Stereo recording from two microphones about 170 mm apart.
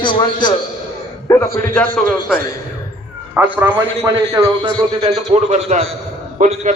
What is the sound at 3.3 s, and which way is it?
A man's voice, 10° right (ahead or behind).